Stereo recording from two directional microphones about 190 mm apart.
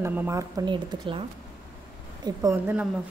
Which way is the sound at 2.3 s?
15° right (ahead or behind).